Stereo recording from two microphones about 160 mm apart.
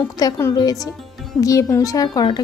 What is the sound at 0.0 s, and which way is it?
Speech, 20° left (ahead or behind).